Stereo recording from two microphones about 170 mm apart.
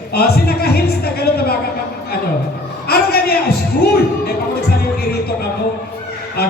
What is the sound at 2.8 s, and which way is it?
Speech, 65° left (ahead or behind).